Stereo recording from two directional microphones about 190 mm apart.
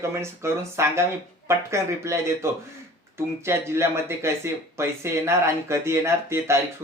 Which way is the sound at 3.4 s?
15° right (ahead or behind).